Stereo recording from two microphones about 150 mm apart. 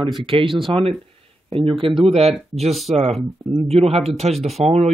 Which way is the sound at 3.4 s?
30° right (ahead or behind).